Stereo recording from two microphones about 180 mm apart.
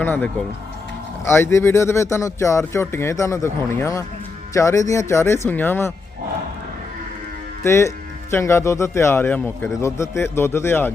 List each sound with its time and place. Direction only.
0.0 s speech: 10° left (ahead or behind)
7.6 s speech: 15° left (ahead or behind)